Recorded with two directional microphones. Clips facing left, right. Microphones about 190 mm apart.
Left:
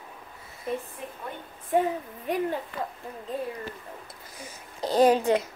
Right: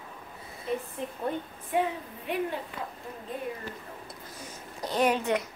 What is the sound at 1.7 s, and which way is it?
Speech, 45° left (ahead or behind).